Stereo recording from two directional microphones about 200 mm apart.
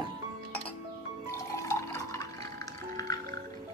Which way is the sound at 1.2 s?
15° left (ahead or behind).